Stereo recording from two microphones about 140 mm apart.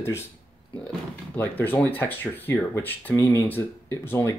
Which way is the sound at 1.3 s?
15° left (ahead or behind).